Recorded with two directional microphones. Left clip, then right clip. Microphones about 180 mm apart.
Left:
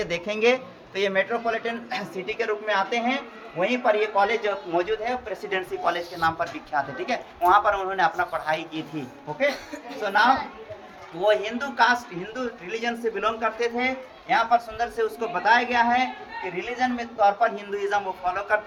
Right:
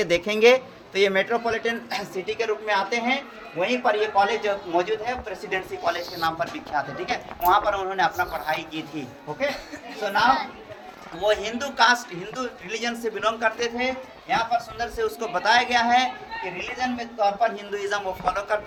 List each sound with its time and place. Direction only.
0.0 s a man's voice: 55° right (ahead or behind); by 4.9 s 20° right (ahead or behind)
5.5 s a woman's voice: 10° right (ahead or behind)
8.3 s speech: 5° left (ahead or behind)
10.0 s a woman's voice: 10° right (ahead or behind)
13.7 s a man's voice: 10° right (ahead or behind); by 16.0 s 25° right (ahead or behind)
16.7 s a woman's voice: 5° right (ahead or behind); by 18.6 s 25° right (ahead or behind)